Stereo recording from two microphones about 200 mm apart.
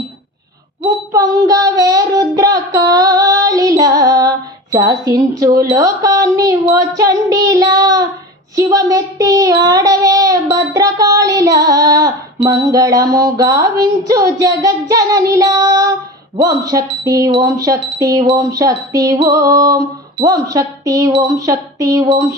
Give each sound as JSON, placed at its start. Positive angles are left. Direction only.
{"t": 0.9, "sound": "child singing", "side_deg": -20}
{"t": 4.7, "sound": "speech", "side_deg": -15}